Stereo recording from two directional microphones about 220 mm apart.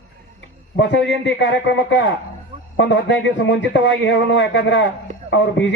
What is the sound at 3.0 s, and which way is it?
A man's voice, 55° left (ahead or behind).